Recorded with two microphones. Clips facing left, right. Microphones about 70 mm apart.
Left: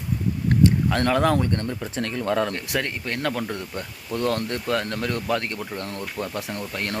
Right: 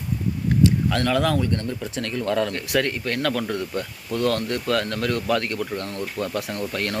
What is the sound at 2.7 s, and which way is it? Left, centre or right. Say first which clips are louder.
Speech: right 8 dB; centre.